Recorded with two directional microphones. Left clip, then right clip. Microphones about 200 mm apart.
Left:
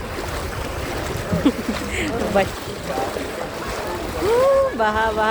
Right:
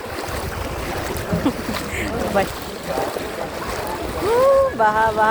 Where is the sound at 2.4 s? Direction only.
40° left (ahead or behind).